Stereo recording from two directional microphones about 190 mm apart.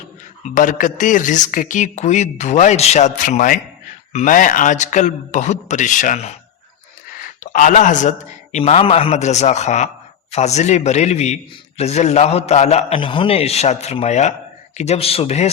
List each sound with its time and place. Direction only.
0.5 s speech: 45° left (ahead or behind)
7.2 s a sound: 40° left (ahead or behind)
8.5 s speech: 35° left (ahead or behind)